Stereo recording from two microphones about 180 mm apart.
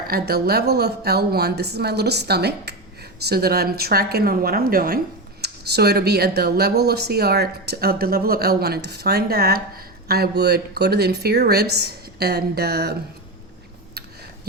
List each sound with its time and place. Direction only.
0.1 s speech: 60° right (ahead or behind)